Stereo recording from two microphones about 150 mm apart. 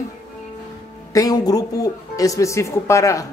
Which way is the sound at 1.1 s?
25° left (ahead or behind).